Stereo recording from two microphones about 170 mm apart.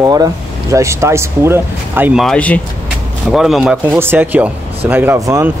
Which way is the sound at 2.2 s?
5° left (ahead or behind).